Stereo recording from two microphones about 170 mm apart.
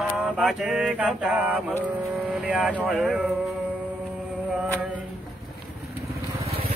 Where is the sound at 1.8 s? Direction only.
10° right (ahead or behind).